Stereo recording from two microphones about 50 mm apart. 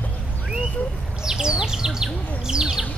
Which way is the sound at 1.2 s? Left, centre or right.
Centre.